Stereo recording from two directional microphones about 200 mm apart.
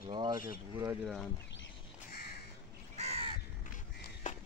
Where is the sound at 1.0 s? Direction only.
5° left (ahead or behind).